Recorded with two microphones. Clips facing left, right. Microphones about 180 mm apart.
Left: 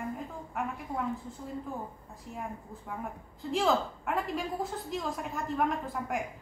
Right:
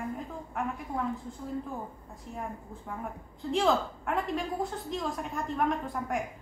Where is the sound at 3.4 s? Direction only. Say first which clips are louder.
Right 1 dB; centre (ahead or behind).